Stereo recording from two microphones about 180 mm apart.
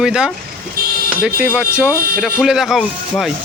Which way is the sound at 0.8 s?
55° right (ahead or behind).